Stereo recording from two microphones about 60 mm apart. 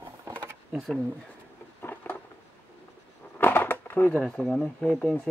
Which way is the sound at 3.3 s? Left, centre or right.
Left.